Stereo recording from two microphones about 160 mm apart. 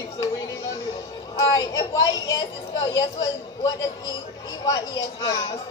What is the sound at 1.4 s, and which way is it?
A woman's voice, 20° left (ahead or behind).